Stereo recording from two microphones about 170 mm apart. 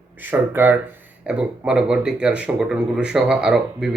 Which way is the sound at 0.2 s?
10° right (ahead or behind).